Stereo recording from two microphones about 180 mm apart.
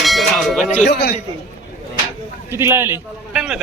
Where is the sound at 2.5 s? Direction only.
15° right (ahead or behind).